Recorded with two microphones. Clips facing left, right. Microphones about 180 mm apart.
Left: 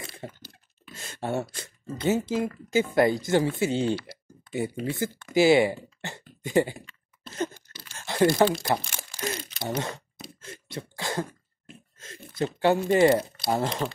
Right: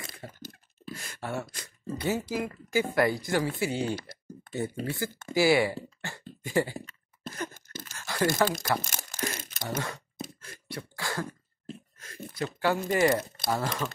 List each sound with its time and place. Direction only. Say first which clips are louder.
0.2 s a sound: left 3 dB; 20° left (ahead or behind)
1.5 s speech: even; 25° left (ahead or behind)
3.9 s a sound: left 5 dB; 45° right (ahead or behind)
4.8 s speech: left 3 dB; 20° left (ahead or behind)
5.9 s a sound: left 2 dB; 20° left (ahead or behind)
6.4 s speech: left 4 dB; 20° left (ahead or behind)
7.5 s a sound: right 6 dB; 45° right (ahead or behind)
7.9 s tearing: left 6 dB; 25° left (ahead or behind)
8.8 s crumpling: even; 45° right (ahead or behind)
9.4 s crunch: left 4 dB; 45° right (ahead or behind)
9.7 s speech: left 3 dB; 25° left (ahead or behind)
10.4 s beatboxing: left 3 dB; 25° left (ahead or behind)
12.0 s speech: left 5 dB; 25° left (ahead or behind)